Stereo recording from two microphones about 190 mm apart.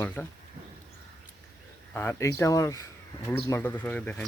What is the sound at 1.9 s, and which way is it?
Speech, 10° left (ahead or behind).